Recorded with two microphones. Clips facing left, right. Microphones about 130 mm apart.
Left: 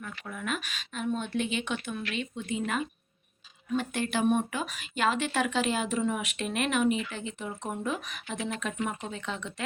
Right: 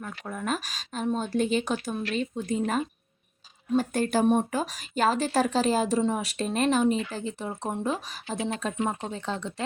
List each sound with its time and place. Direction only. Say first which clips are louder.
0.3 s speech: right 4 dB; 40° right (ahead or behind)